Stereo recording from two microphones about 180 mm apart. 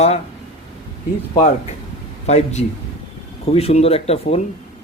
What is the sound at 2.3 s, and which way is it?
A man's voice, 35° left (ahead or behind).